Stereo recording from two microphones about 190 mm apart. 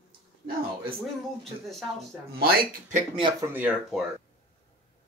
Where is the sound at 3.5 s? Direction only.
5° right (ahead or behind).